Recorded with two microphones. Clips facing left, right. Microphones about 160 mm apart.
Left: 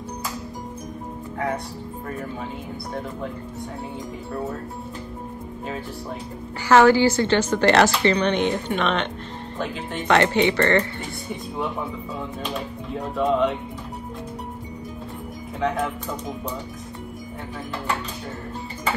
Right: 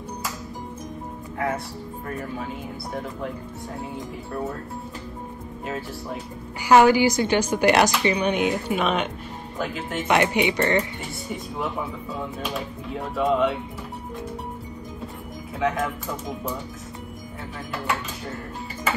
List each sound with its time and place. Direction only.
6.6 s a woman's voice: 15° right (ahead or behind)
10.0 s a woman's voice: 15° right (ahead or behind)
12.4 s speech: 5° right (ahead or behind)
15.6 s speech: centre (ahead or behind)